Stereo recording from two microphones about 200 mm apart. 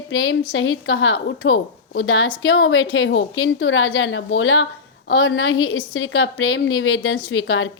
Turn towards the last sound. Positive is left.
turn(degrees=80)